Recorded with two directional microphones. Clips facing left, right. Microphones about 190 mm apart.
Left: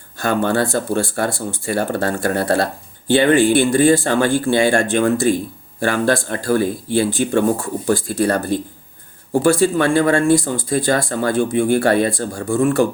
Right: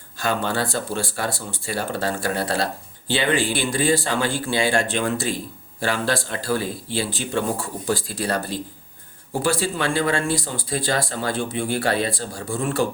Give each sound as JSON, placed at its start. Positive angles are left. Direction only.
{"t": 0.2, "sound": "speech", "side_deg": 50}